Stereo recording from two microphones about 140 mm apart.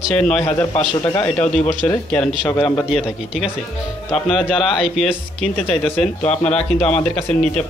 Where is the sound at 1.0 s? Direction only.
30° left (ahead or behind).